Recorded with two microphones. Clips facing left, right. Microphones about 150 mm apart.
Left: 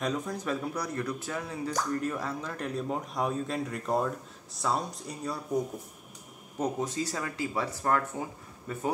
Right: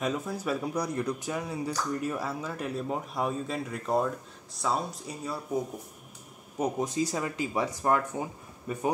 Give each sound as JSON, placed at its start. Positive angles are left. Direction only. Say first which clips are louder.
{"t": 0.0, "sound": "speech", "louder": "right 1 dB", "side_deg": -5}
{"t": 6.6, "sound": "speech", "louder": "right 2 dB", "side_deg": -15}